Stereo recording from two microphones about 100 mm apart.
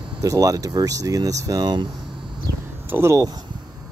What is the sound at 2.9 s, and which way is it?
Speech, 25° right (ahead or behind).